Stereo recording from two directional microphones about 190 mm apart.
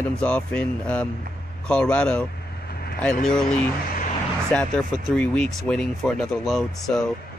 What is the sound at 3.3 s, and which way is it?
Speech, 5° left (ahead or behind).